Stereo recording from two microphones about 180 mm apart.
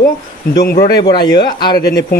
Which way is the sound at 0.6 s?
60° left (ahead or behind).